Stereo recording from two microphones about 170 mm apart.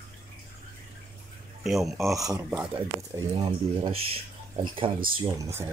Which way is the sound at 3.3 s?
30° right (ahead or behind).